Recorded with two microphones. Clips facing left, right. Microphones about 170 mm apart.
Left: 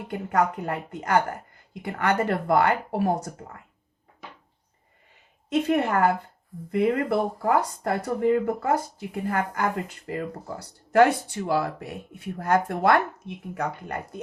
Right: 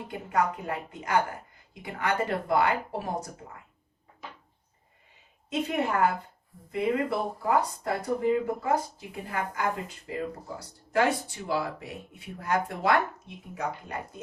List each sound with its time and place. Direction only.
0.1 s speech: 55° left (ahead or behind)
5.6 s speech: 55° left (ahead or behind)